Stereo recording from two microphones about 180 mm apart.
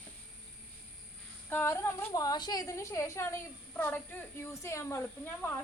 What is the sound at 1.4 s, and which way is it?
A woman's voice, 15° left (ahead or behind).